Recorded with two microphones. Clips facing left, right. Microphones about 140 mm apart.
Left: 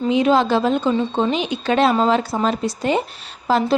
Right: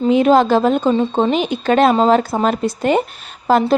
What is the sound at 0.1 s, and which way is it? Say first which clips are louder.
A woman's voice: right 4 dB; 50° right (ahead or behind).